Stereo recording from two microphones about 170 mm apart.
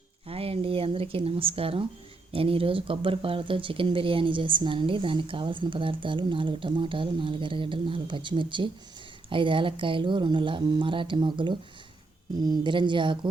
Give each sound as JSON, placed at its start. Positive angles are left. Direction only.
{"t": 0.3, "sound": "speech", "side_deg": -35}